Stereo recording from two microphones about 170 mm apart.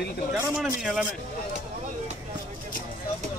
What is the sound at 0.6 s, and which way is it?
Speech, 5° right (ahead or behind).